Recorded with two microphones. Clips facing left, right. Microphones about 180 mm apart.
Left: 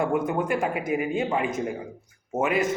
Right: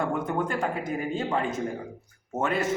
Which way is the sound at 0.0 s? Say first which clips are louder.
Left 3 dB; 15° left (ahead or behind).